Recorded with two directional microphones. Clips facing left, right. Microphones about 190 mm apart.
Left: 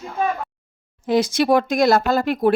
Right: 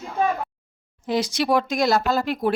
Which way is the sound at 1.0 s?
50° left (ahead or behind).